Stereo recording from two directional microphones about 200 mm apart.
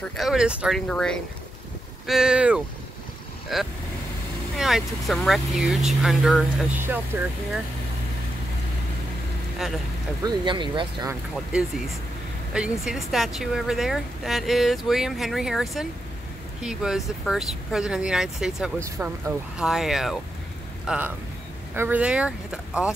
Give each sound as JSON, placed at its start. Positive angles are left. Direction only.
{"t": 0.2, "sound": "speech", "side_deg": -5}
{"t": 10.2, "sound": "speech", "side_deg": -25}
{"t": 12.5, "sound": "speech", "side_deg": -5}